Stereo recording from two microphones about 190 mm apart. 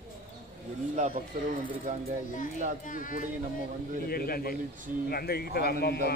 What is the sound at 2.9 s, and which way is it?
A man's voice, 45° left (ahead or behind).